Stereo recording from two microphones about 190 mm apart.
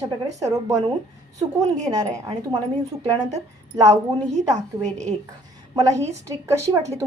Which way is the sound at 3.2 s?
40° right (ahead or behind).